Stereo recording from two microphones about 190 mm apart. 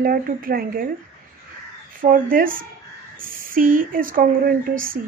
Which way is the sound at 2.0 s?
45° right (ahead or behind).